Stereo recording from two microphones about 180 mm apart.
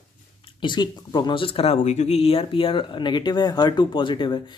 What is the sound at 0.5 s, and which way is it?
Speech, 25° left (ahead or behind).